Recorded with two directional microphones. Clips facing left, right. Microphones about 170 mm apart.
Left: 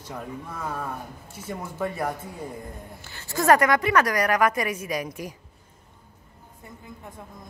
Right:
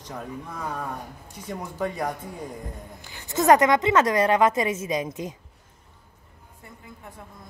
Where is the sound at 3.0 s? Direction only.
15° right (ahead or behind).